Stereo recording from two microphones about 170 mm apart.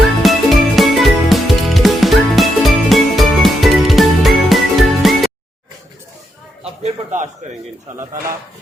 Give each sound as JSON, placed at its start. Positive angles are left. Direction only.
{"t": 0.2, "sound": "music", "side_deg": 0}
{"t": 6.8, "sound": "a sound", "side_deg": -45}
{"t": 7.9, "sound": "speech", "side_deg": -50}